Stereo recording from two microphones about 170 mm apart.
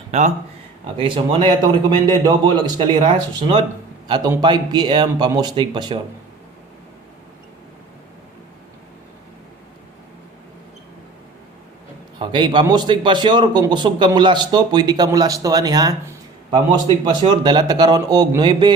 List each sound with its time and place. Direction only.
0.1 s speech: 40° right (ahead or behind)
0.9 s a man's voice: 30° right (ahead or behind)
4.1 s a man's voice: 25° right (ahead or behind)
12.2 s a man's voice: 25° right (ahead or behind)